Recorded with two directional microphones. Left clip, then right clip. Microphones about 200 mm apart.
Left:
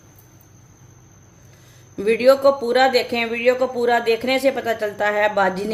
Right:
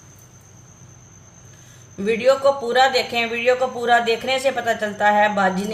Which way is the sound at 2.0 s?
40° left (ahead or behind).